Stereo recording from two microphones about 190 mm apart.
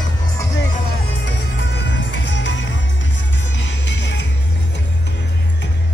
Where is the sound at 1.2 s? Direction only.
70° left (ahead or behind).